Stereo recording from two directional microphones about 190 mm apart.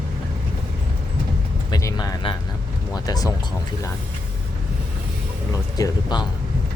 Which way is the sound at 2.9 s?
20° left (ahead or behind).